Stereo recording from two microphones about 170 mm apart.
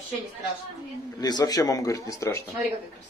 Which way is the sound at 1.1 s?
25° left (ahead or behind).